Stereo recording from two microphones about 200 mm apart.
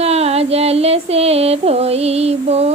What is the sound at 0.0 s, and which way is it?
Music, 30° right (ahead or behind).